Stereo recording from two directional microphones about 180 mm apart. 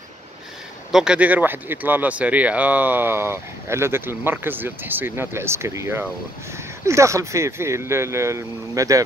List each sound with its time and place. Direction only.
0.9 s speech: 5° right (ahead or behind)